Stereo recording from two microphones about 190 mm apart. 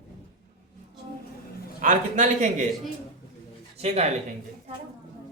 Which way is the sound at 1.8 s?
40° right (ahead or behind).